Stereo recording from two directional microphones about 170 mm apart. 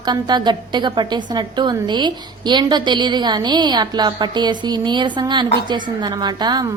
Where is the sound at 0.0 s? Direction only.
25° right (ahead or behind).